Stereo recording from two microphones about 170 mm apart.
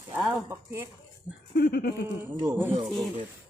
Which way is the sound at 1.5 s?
65° left (ahead or behind).